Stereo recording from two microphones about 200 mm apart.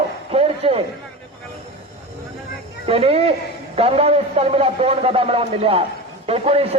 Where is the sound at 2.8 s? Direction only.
30° right (ahead or behind).